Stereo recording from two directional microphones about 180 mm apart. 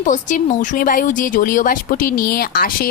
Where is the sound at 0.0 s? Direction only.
45° left (ahead or behind).